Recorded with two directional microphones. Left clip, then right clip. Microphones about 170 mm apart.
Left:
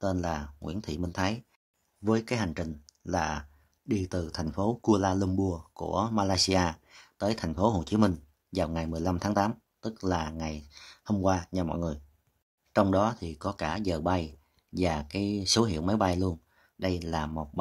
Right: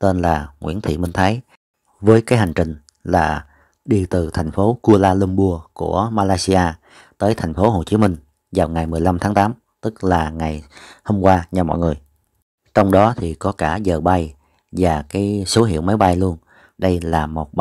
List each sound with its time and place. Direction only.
0.0 s speech: 40° right (ahead or behind)